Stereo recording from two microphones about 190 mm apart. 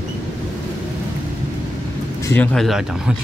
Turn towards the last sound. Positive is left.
turn(degrees=0)  # may be behind; listen again after turning